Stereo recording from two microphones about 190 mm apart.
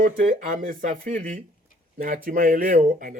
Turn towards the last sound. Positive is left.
turn(degrees=-45)  # may be behind; listen again after turning